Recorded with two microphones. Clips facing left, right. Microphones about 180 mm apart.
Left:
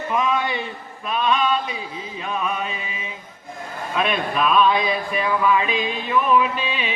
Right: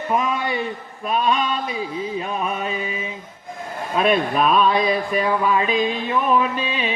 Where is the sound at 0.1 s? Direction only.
45° right (ahead or behind).